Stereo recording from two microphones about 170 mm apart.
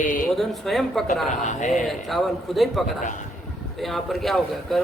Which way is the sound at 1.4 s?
45° left (ahead or behind).